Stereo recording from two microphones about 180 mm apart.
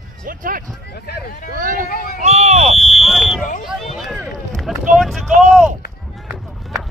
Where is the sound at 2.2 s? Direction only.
35° right (ahead or behind).